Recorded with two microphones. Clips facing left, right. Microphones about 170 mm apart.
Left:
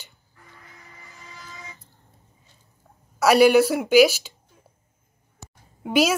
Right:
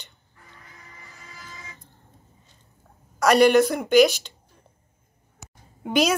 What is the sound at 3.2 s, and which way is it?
Speech, 5° left (ahead or behind).